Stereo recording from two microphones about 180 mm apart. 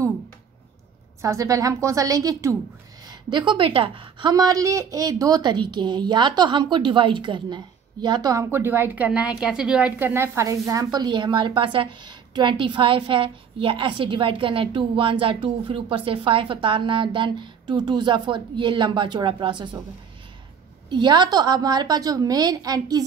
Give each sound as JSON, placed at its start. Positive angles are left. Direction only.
{"t": 1.2, "sound": "a woman's voice", "side_deg": -15}
{"t": 20.9, "sound": "a woman's voice", "side_deg": -25}